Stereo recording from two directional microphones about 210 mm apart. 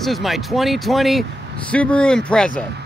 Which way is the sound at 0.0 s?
Centre (ahead or behind).